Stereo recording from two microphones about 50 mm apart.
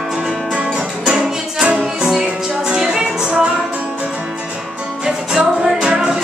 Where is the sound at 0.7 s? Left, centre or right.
Centre.